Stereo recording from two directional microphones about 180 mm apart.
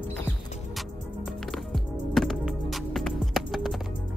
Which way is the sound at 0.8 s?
Centre (ahead or behind).